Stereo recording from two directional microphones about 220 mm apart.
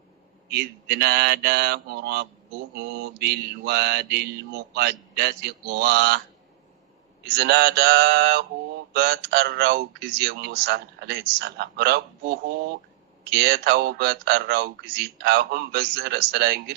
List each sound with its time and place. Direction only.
0.5 s a man's voice: 50° right (ahead or behind)
7.3 s a man's voice: 50° right (ahead or behind)
13.3 s a man's voice: 50° right (ahead or behind)